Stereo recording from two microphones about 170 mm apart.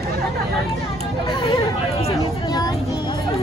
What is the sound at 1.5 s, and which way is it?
Chatter, 35° left (ahead or behind).